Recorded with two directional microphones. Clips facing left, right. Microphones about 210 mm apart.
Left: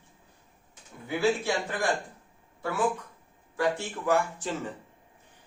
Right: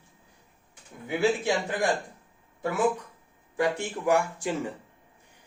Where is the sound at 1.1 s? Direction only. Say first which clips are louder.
Right 1 dB; 20° right (ahead or behind).